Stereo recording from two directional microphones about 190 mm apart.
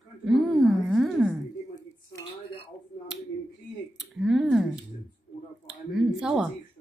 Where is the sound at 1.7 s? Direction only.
20° left (ahead or behind).